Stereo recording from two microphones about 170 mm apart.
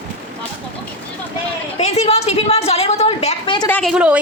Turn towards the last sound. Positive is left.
turn(degrees=-5)  # may be behind; listen again after turning